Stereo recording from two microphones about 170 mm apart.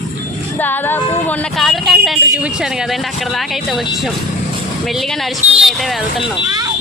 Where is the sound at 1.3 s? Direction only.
5° left (ahead or behind).